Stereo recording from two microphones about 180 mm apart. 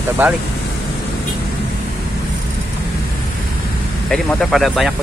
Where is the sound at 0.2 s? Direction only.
10° right (ahead or behind).